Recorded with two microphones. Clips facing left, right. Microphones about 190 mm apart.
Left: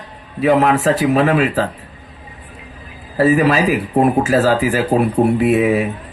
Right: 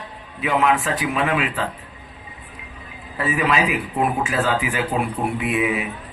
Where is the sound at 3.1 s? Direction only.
40° left (ahead or behind).